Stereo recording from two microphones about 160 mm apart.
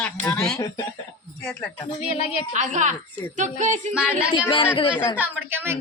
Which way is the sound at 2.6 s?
50° right (ahead or behind).